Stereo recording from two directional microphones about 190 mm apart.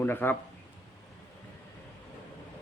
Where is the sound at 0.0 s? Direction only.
10° left (ahead or behind).